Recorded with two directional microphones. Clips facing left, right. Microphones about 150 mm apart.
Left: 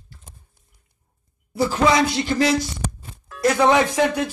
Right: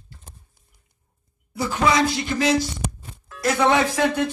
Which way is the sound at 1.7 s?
35° left (ahead or behind).